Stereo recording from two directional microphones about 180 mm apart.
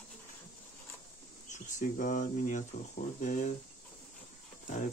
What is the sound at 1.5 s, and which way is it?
Speech, 45° left (ahead or behind).